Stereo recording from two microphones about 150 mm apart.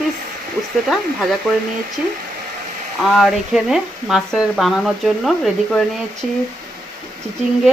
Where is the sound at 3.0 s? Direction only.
Centre (ahead or behind).